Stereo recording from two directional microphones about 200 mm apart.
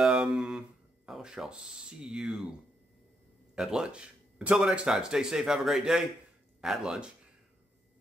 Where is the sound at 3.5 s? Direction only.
5° right (ahead or behind).